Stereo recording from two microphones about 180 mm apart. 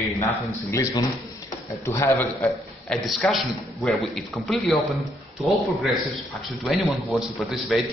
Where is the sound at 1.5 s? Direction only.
15° left (ahead or behind).